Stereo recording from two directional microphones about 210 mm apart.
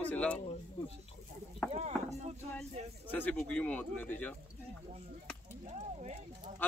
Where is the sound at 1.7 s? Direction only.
30° right (ahead or behind).